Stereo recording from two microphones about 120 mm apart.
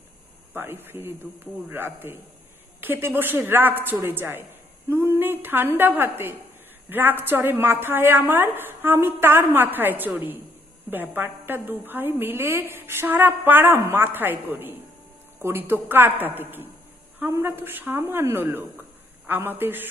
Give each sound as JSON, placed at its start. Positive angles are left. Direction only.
{"t": 0.5, "sound": "a woman's voice", "side_deg": -20}